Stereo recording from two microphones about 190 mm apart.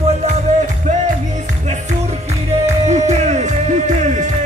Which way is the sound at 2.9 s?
35° right (ahead or behind).